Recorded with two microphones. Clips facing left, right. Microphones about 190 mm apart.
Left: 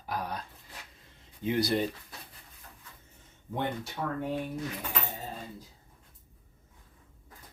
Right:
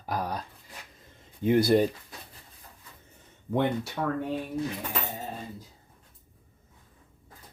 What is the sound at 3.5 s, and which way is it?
Speech, 80° right.